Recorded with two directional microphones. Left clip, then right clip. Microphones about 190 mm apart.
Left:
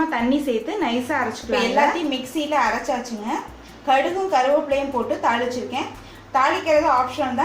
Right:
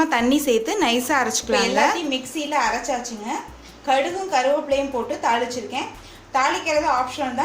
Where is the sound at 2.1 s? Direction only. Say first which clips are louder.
Left 1 dB; 15° right (ahead or behind).